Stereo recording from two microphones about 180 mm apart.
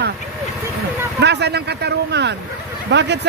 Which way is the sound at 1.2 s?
70° right (ahead or behind).